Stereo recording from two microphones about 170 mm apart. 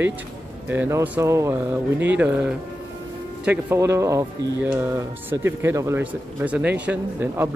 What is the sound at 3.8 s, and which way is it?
Speech, 15° right (ahead or behind).